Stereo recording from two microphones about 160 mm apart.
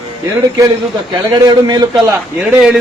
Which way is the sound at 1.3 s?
25° right (ahead or behind).